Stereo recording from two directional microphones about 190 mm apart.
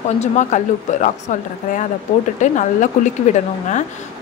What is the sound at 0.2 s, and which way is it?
Speech, 40° left (ahead or behind).